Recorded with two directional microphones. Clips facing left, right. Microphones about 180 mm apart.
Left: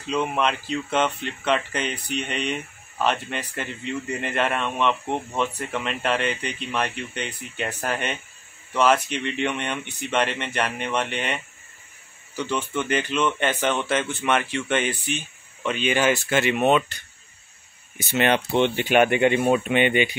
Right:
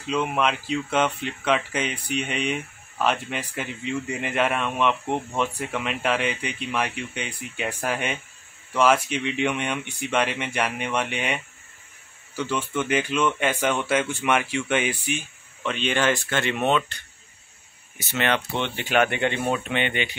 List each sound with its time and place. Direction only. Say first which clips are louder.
0.0 s speech: even; 5° right (ahead or behind)
15.6 s speech: left 2 dB; 5° left (ahead or behind)
18.1 s speech: left 4 dB; 15° left (ahead or behind)